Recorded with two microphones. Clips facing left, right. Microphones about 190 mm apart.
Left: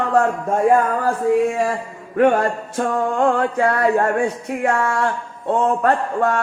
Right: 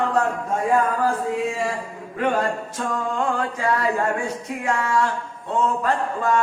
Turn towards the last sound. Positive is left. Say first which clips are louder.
# left 4 dB
turn(degrees=60)  # may be behind; listen again after turning